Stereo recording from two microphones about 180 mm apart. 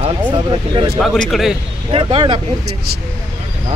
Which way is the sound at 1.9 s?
30° right (ahead or behind).